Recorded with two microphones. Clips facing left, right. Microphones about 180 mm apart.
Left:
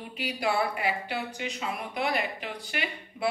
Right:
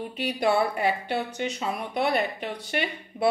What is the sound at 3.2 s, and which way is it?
Speech, 45° right (ahead or behind).